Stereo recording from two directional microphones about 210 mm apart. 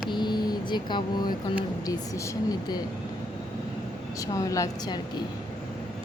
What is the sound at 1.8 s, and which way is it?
Speech, 15° left (ahead or behind).